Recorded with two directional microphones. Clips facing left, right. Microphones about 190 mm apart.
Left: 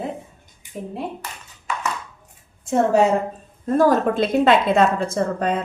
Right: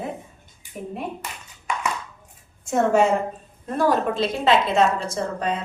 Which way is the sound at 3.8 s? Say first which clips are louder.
Left 4 dB; 45° left (ahead or behind).